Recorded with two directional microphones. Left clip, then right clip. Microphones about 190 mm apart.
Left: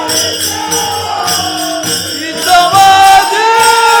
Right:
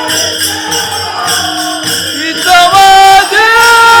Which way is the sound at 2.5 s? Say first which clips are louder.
Right 2 dB; 15° right (ahead or behind).